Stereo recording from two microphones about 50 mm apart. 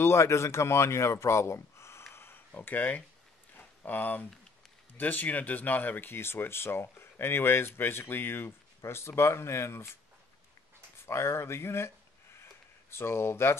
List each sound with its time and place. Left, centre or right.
0.0 s speech: left
2.1 s a sound: left
2.5 s speech: left
3.5 s a sound: left
4.9 s speech: left
11.1 s speech: left
12.9 s speech: left